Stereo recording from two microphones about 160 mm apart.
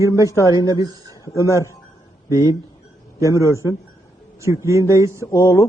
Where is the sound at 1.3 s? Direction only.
20° left (ahead or behind).